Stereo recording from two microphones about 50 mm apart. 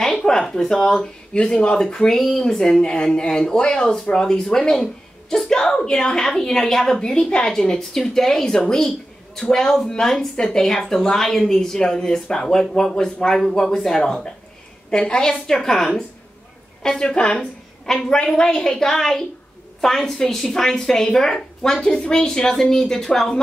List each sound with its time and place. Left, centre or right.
0.0 s speech: centre
1.3 s a woman's voice: centre